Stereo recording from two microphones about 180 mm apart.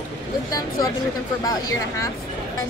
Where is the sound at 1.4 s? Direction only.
20° left (ahead or behind).